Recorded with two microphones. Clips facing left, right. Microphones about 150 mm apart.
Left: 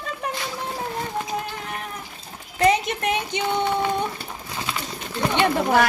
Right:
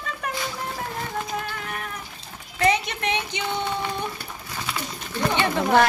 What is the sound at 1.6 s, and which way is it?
Water, 35° left (ahead or behind).